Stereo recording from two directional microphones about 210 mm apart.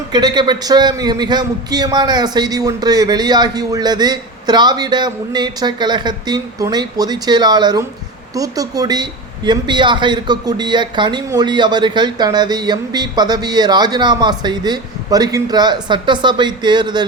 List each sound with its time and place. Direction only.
0.1 s a man's voice: 20° right (ahead or behind)